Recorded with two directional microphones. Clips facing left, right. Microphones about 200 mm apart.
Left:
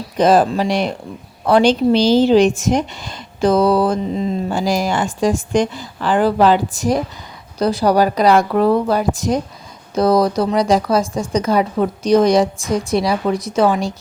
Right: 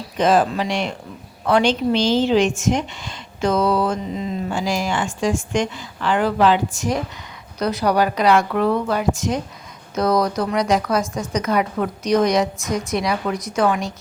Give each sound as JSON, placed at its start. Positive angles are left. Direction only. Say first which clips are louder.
{"t": 0.2, "sound": "speech", "louder": "left 4 dB", "side_deg": 35}